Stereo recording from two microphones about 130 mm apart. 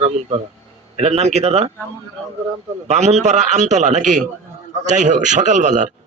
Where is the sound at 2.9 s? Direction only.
60° right (ahead or behind).